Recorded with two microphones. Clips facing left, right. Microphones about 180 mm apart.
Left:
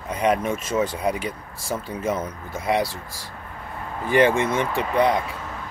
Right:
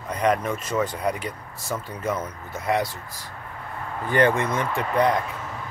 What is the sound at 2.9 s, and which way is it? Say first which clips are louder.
Speech: left 2 dB; 90° left.